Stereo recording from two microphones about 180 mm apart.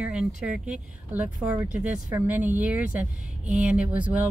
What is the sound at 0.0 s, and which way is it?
Speech, 5° right (ahead or behind).